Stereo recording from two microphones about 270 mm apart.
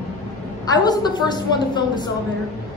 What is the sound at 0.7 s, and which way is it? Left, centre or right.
A woman's voice, centre.